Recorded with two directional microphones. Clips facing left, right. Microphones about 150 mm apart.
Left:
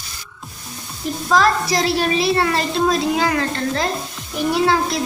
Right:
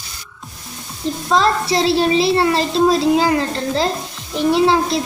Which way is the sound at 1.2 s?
25° right (ahead or behind).